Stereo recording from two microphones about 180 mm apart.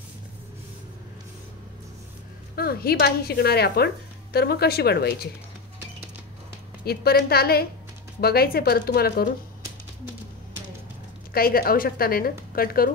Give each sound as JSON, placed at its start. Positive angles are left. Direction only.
{"t": 2.5, "sound": "speech", "side_deg": 60}
{"t": 6.8, "sound": "speech", "side_deg": 60}
{"t": 11.3, "sound": "speech", "side_deg": 55}